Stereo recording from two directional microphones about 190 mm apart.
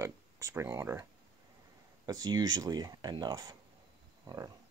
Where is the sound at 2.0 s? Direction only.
20° right (ahead or behind).